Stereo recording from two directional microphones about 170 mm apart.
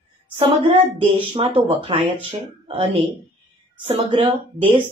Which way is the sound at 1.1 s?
35° right (ahead or behind).